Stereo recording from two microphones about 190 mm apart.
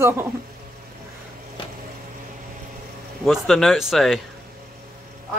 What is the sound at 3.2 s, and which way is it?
Speech, centre (ahead or behind).